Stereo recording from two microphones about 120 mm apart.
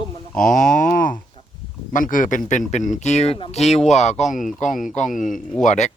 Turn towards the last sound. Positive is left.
turn(degrees=85)